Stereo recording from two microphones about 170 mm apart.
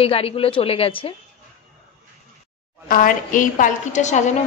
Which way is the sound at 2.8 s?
55° left (ahead or behind).